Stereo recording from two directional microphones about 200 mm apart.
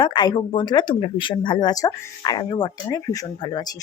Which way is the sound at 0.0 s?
25° left (ahead or behind).